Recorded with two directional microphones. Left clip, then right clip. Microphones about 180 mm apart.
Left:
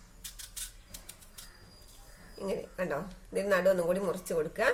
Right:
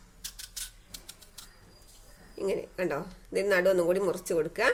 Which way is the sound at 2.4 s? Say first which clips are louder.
Right 4 dB; 40° right (ahead or behind).